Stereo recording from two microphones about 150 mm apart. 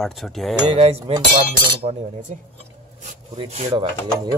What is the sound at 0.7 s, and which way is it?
Cutlery, 40° right (ahead or behind).